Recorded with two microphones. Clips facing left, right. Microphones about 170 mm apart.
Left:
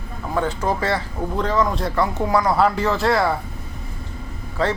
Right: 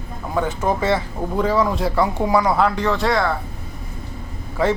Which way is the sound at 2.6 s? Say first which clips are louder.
Even; 5° left (ahead or behind).